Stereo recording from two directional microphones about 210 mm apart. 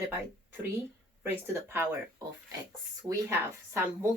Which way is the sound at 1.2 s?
10° right (ahead or behind).